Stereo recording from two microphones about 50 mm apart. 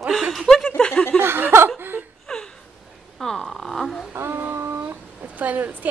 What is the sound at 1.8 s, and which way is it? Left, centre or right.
Whimper, right.